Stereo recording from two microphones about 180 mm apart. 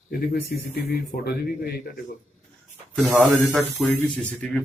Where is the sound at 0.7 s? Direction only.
60° left (ahead or behind).